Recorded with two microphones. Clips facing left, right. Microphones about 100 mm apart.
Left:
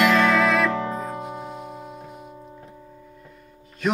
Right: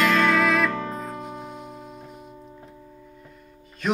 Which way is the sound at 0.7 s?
15° left (ahead or behind).